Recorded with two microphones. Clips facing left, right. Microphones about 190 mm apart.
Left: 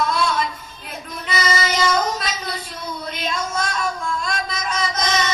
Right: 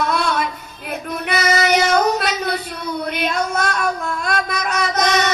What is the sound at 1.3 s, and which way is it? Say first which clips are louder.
Child singing: right 5 dB; 60° right (ahead or behind).